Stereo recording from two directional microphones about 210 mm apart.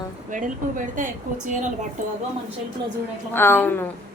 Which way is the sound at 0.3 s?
40° right (ahead or behind).